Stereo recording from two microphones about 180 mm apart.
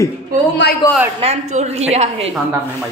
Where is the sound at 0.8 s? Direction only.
20° left (ahead or behind).